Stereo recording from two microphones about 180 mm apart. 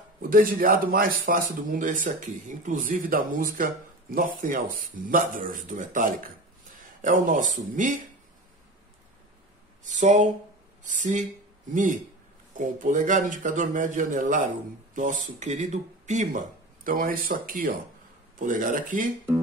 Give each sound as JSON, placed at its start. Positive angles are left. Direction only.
{"t": 0.3, "sound": "speech", "side_deg": -55}
{"t": 9.8, "sound": "speech", "side_deg": -40}